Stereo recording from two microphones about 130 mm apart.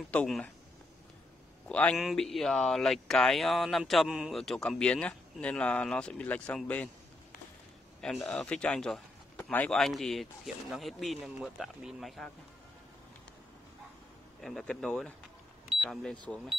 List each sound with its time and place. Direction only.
0.1 s speech: 10° left (ahead or behind)
1.7 s speech: 10° left (ahead or behind)
2.0 s speech: centre (ahead or behind)
8.0 s a man's voice: 5° left (ahead or behind)
9.8 s speech: centre (ahead or behind)
14.4 s speech: 5° left (ahead or behind)